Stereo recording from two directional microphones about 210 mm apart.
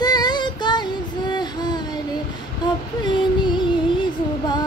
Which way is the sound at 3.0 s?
20° left (ahead or behind).